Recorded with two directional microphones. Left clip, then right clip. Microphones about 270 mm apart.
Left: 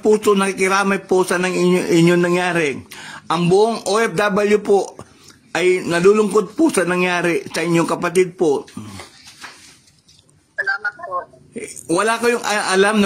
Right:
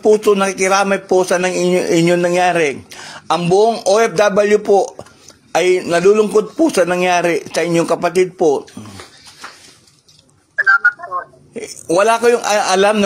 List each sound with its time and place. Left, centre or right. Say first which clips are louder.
0.0 s a man's voice: right 3 dB; left
10.5 s telephone: right 9 dB; centre
11.5 s a man's voice: right 5 dB; centre